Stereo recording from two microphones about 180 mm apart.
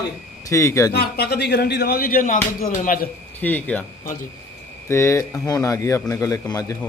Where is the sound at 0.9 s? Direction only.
60° left (ahead or behind).